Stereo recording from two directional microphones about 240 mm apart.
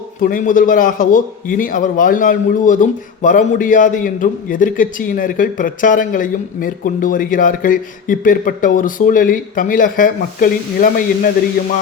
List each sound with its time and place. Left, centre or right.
0.2 s a man's voice: left